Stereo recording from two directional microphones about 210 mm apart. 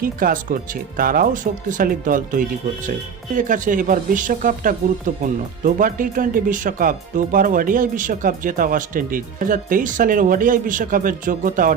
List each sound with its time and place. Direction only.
0.0 s speech: 40° right (ahead or behind)